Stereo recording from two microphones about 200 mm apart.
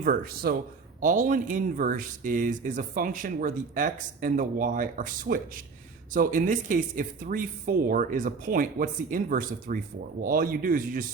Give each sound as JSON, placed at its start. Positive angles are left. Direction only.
{"t": 0.0, "sound": "speech", "side_deg": -45}